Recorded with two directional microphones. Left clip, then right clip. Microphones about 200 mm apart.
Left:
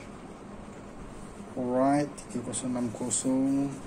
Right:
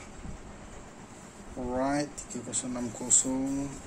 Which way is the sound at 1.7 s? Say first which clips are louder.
Left 4 dB; 5° right (ahead or behind).